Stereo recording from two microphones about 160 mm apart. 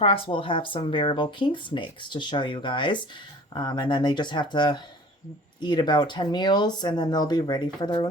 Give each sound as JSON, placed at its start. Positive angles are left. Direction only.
{"t": 0.0, "sound": "speech", "side_deg": 35}